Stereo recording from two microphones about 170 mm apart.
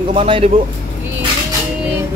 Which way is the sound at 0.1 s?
35° right (ahead or behind).